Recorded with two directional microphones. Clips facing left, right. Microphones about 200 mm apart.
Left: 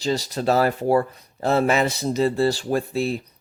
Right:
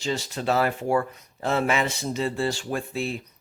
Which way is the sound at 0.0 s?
35° left (ahead or behind).